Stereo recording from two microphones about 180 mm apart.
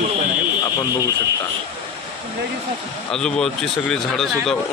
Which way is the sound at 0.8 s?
20° left (ahead or behind).